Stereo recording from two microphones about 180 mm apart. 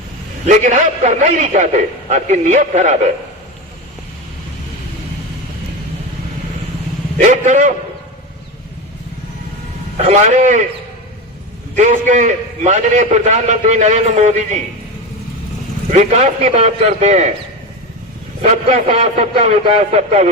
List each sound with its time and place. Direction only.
0.4 s a man's voice: 40° right (ahead or behind)
7.2 s a man's voice: 40° right (ahead or behind)
10.2 s a man's voice: 45° right (ahead or behind)
11.8 s a man's voice: 40° right (ahead or behind)
15.9 s a man's voice: 40° right (ahead or behind)
18.4 s a man's voice: 35° right (ahead or behind)